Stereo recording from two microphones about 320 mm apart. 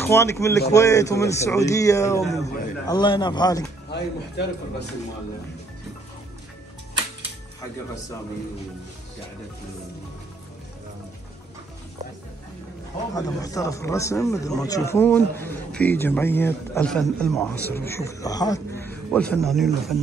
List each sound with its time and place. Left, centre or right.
0.0 s a man's voice: centre
3.9 s a man's voice: left
13.1 s a man's voice: centre